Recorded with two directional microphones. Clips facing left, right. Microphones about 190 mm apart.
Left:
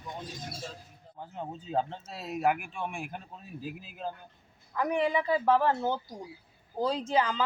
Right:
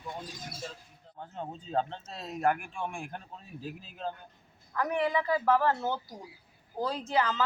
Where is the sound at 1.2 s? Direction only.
10° left (ahead or behind).